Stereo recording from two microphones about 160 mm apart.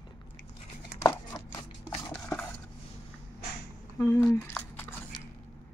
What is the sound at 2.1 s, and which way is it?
Dishes, 5° left (ahead or behind).